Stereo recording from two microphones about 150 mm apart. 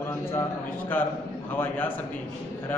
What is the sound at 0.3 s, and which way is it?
A man's voice, 15° left (ahead or behind).